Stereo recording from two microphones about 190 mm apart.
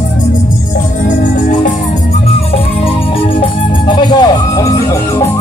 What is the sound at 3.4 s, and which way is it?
Music, 25° left (ahead or behind).